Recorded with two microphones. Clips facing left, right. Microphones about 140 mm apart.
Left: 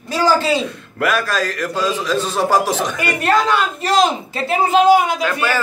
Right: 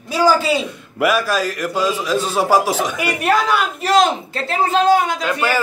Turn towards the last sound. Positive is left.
turn(degrees=-15)  # may be behind; listen again after turning